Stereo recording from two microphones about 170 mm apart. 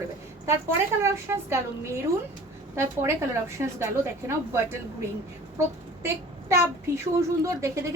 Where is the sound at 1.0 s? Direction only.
15° right (ahead or behind).